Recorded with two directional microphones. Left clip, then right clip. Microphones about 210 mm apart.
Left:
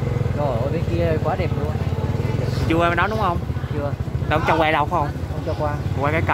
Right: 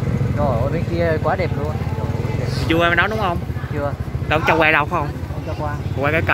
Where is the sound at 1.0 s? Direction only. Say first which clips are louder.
Right 4 dB; 25° right (ahead or behind).